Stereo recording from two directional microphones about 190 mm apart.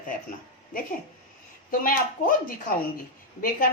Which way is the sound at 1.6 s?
45° left (ahead or behind).